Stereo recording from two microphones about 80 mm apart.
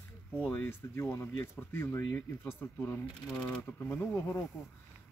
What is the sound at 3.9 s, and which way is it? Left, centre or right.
Speech, left.